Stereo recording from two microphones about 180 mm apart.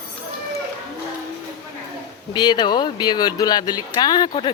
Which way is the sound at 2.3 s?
25° left (ahead or behind).